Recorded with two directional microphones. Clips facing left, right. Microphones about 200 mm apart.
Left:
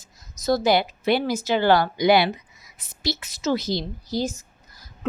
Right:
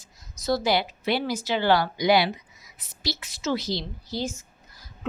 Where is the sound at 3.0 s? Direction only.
45° left (ahead or behind).